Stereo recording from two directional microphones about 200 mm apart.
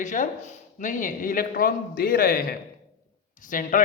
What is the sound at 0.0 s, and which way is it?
Speech, 40° left (ahead or behind).